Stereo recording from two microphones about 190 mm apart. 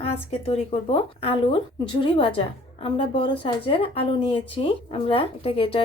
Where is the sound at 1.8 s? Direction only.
25° left (ahead or behind).